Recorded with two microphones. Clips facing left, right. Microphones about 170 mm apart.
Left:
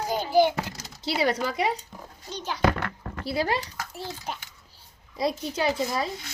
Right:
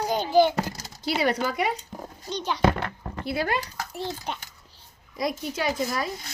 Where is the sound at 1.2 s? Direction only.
25° left (ahead or behind).